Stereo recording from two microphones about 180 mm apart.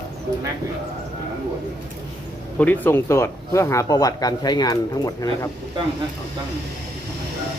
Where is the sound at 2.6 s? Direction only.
10° left (ahead or behind).